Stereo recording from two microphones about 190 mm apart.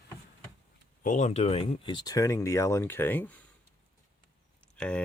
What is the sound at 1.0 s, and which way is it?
Speech, 40° left (ahead or behind).